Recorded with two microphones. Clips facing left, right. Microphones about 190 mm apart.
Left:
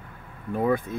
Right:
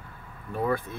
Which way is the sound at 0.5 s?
15° left (ahead or behind).